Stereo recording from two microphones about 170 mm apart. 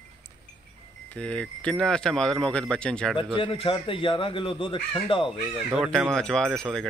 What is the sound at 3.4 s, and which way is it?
Speech, 30° left (ahead or behind).